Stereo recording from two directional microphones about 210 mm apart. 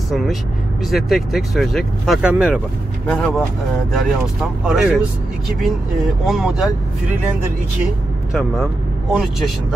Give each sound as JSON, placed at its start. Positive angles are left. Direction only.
{"t": 0.8, "sound": "speech", "side_deg": 0}
{"t": 6.2, "sound": "speech", "side_deg": 0}